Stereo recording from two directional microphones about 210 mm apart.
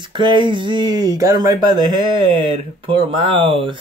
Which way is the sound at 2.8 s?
25° right (ahead or behind).